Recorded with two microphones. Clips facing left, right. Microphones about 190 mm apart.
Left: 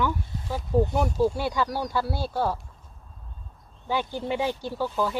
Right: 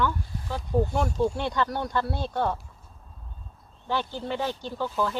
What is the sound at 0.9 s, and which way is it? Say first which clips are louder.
Speech: left 2 dB; 5° left (ahead or behind).